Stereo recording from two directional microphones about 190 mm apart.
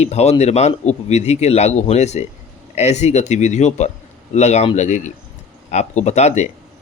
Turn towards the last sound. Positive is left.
turn(degrees=35)  # may be behind; listen again after turning